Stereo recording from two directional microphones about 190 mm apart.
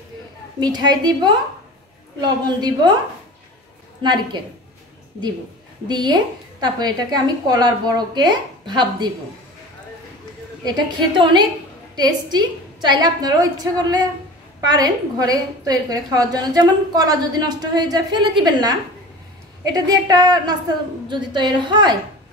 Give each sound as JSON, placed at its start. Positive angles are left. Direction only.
{"t": 0.6, "sound": "a woman's voice", "side_deg": -20}
{"t": 4.0, "sound": "a woman's voice", "side_deg": -25}
{"t": 5.9, "sound": "a woman's voice", "side_deg": -25}
{"t": 10.6, "sound": "a woman's voice", "side_deg": -25}